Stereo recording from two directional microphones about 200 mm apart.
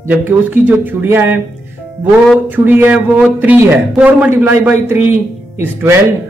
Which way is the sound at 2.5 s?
10° right (ahead or behind).